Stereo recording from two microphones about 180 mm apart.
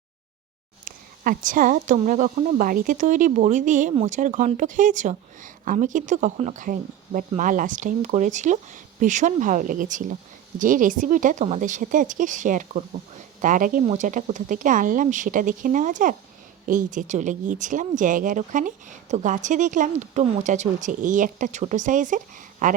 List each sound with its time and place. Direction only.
0.9 s speech: 50° right (ahead or behind)